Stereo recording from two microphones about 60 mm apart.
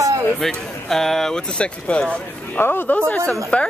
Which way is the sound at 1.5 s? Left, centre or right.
Centre.